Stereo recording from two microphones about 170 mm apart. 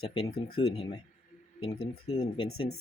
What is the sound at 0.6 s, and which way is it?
Speech, 35° left (ahead or behind).